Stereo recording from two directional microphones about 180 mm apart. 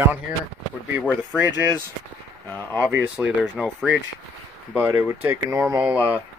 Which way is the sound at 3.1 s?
5° right (ahead or behind).